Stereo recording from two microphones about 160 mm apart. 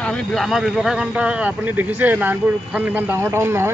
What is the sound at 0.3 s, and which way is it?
Speech, centre (ahead or behind).